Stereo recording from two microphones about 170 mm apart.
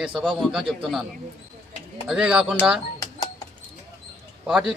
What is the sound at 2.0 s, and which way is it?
Speech, 5° right (ahead or behind).